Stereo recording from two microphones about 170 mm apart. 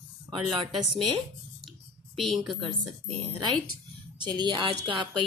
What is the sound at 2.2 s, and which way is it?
Speech, centre (ahead or behind).